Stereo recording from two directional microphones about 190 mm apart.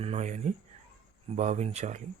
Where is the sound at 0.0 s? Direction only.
35° right (ahead or behind).